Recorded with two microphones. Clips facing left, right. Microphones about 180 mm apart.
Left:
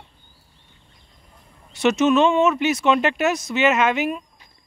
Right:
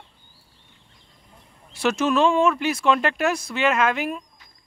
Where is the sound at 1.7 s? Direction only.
Centre (ahead or behind).